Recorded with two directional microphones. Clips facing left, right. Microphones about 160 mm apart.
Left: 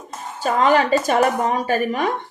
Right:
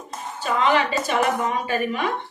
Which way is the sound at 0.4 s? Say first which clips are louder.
Left 4 dB; 40° left (ahead or behind).